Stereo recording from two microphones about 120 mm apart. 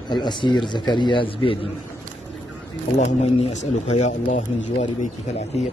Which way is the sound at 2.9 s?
70° left (ahead or behind).